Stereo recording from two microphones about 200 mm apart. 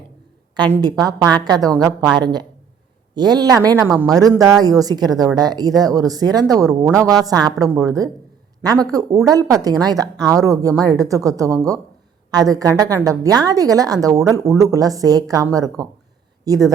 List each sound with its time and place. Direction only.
0.7 s a woman's voice: 20° right (ahead or behind)